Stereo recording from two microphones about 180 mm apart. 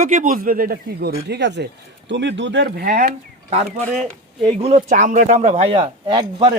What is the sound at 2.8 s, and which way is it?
Speech, 45° right (ahead or behind).